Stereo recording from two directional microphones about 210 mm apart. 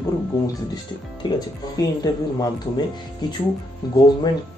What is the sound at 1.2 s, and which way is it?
Speech, 20° left (ahead or behind).